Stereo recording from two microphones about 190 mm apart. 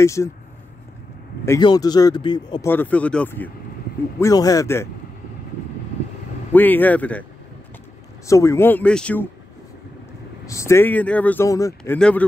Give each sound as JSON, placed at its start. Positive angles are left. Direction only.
{"t": 0.0, "sound": "speech", "side_deg": 15}
{"t": 1.4, "sound": "speech", "side_deg": 20}
{"t": 2.7, "sound": "speech", "side_deg": 10}
{"t": 6.5, "sound": "speech", "side_deg": 10}
{"t": 8.3, "sound": "speech", "side_deg": 15}
{"t": 10.5, "sound": "speech", "side_deg": 15}
{"t": 12.0, "sound": "speech", "side_deg": 5}